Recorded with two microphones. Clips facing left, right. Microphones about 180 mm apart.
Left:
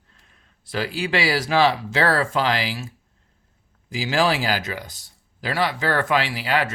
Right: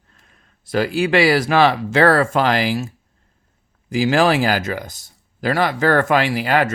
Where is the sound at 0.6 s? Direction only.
50° right (ahead or behind).